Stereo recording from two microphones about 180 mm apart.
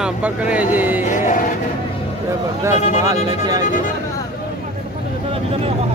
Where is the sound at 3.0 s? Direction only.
20° right (ahead or behind).